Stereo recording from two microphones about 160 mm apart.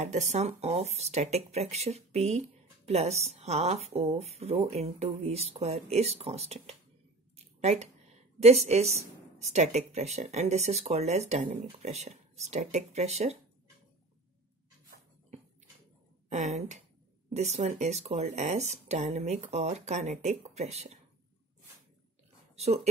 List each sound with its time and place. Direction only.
0.0 s speech: 45° right (ahead or behind)
16.3 s speech: 50° right (ahead or behind)